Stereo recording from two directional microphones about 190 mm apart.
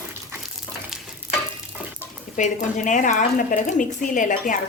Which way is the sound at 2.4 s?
40° left (ahead or behind).